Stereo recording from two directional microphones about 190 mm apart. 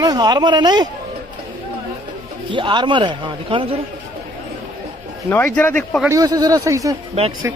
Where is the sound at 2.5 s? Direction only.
25° right (ahead or behind).